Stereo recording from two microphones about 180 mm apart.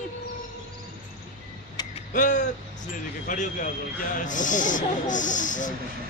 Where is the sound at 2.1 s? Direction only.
45° left (ahead or behind).